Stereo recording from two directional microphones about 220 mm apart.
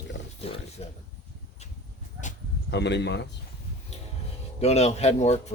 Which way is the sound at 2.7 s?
50° left (ahead or behind).